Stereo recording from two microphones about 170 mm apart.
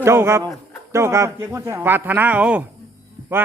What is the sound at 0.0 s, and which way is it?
Speech, 15° right (ahead or behind).